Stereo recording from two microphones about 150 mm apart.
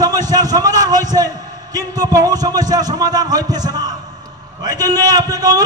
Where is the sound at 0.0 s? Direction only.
25° right (ahead or behind).